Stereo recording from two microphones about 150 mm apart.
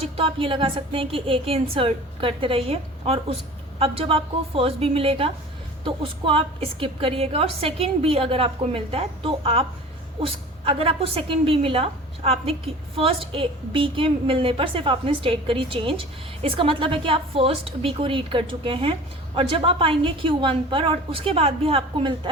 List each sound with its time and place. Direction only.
0.2 s a woman's voice: 35° right (ahead or behind)